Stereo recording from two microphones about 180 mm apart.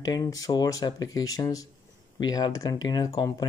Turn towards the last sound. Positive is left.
turn(degrees=20)  # may be behind; listen again after turning